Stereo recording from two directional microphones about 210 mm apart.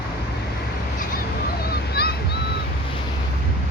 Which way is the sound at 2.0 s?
50° left (ahead or behind).